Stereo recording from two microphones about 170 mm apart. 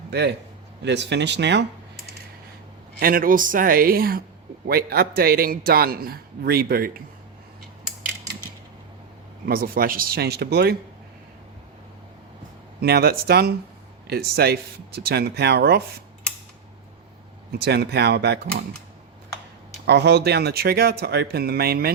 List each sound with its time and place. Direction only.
0.1 s a man's voice: 80° right
0.8 s speech: 90° right
3.0 s a man's voice: 60° right (ahead or behind)
9.5 s a man's voice: 60° right (ahead or behind)
12.8 s speech: 65° right (ahead or behind)
17.6 s speech: 75° right (ahead or behind)
19.8 s speech: 80° right